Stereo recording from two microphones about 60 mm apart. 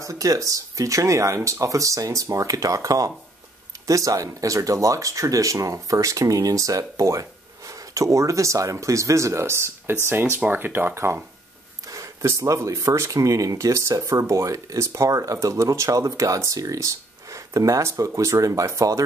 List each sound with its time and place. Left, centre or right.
0.0 s speech: right
11.9 s speech: right